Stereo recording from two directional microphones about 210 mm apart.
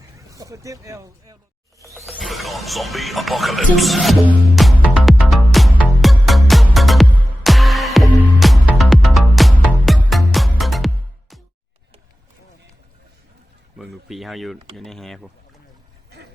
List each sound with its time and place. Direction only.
0.2 s speech: 15° right (ahead or behind)
2.0 s music: centre (ahead or behind)
13.7 s a sound: centre (ahead or behind)
14.8 s speech: centre (ahead or behind)